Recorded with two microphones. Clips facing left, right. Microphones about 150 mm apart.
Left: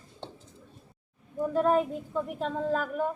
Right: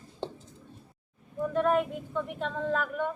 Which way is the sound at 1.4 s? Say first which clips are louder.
Left 1 dB; 30° left (ahead or behind).